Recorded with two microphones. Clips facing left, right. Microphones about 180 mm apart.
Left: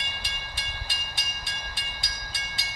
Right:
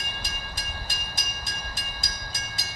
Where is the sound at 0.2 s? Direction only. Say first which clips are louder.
Right 2 dB; 40° right (ahead or behind).